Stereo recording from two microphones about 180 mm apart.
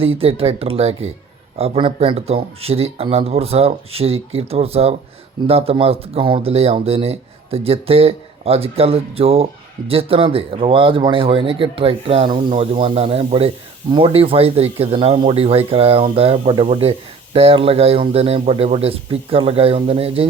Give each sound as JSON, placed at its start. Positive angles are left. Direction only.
{"t": 0.0, "sound": "speech", "side_deg": -30}